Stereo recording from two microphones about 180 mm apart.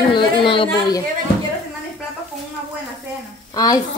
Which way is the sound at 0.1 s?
30° left (ahead or behind).